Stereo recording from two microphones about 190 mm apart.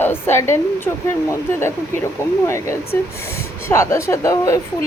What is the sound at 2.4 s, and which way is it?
Speech, 15° left (ahead or behind).